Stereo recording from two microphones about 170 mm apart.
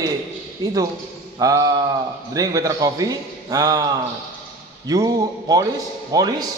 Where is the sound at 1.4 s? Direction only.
20° right (ahead or behind).